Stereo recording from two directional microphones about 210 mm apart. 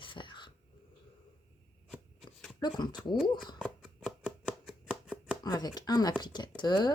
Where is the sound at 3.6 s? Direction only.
Centre (ahead or behind).